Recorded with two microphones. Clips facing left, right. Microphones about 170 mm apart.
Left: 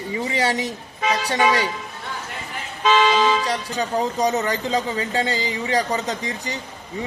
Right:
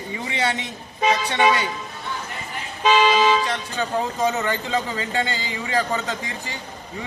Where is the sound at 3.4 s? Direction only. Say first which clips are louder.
Left 2 dB; 35° left (ahead or behind).